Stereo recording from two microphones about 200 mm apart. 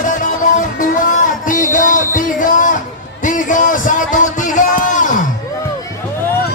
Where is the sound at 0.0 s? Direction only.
40° left (ahead or behind).